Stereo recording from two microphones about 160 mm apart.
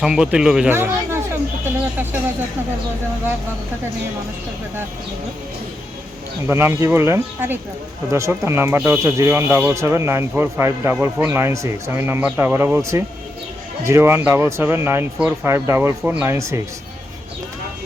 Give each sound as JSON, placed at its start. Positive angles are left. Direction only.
{"t": 0.0, "sound": "speech", "side_deg": -5}
{"t": 0.7, "sound": "speech", "side_deg": -15}
{"t": 6.5, "sound": "speech", "side_deg": -15}